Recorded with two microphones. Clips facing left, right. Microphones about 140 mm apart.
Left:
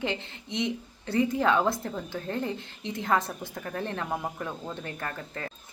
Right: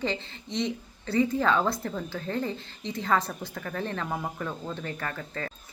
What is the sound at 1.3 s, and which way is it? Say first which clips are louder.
A woman's voice: left 1 dB; 15° left (ahead or behind).